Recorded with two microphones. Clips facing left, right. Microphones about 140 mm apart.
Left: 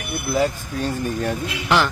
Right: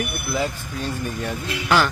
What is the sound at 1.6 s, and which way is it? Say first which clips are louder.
Speech: even; 20° left (ahead or behind).